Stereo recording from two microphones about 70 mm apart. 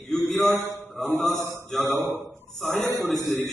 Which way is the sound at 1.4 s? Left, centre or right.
Right.